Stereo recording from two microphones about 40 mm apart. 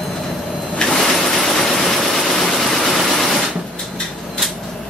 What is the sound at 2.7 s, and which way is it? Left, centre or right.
Vehicle, centre.